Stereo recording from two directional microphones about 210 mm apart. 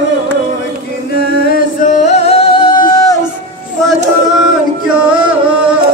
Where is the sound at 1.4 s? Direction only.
40° left (ahead or behind); by 3.1 s 20° left (ahead or behind).